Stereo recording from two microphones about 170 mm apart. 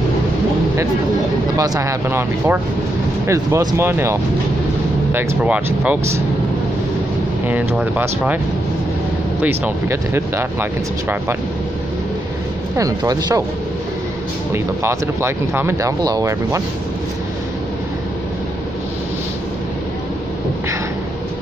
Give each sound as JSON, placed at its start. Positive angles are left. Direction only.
{"t": 1.6, "sound": "speech", "side_deg": -15}
{"t": 7.4, "sound": "speech", "side_deg": -10}
{"t": 9.4, "sound": "speech", "side_deg": -15}
{"t": 12.7, "sound": "speech", "side_deg": -20}
{"t": 14.5, "sound": "speech", "side_deg": -15}